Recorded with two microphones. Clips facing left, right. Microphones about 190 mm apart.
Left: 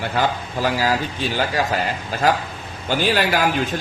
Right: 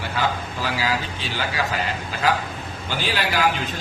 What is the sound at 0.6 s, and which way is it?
A man's voice, 45° left (ahead or behind).